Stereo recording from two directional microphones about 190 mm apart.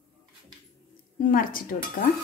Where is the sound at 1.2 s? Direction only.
45° left (ahead or behind).